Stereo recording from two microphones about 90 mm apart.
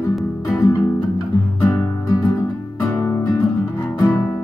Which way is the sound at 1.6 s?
35° left (ahead or behind).